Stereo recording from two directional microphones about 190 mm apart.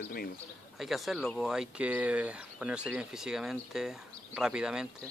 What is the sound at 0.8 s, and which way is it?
Speech, centre (ahead or behind).